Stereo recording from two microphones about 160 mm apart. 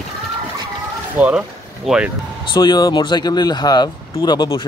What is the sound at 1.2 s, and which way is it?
Speech, 5° right (ahead or behind).